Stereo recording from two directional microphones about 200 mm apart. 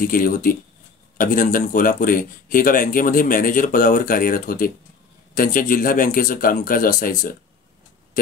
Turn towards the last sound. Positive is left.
turn(degrees=45)  # may be behind; listen again after turning